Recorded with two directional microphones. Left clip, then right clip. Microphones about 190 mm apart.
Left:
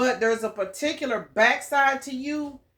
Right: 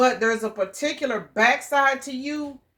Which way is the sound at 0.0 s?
30° right (ahead or behind).